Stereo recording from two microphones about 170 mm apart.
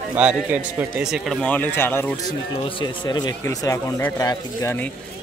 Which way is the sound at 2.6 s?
25° left (ahead or behind).